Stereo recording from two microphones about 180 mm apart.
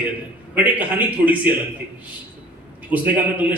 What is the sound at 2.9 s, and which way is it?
Speech, 10° right (ahead or behind).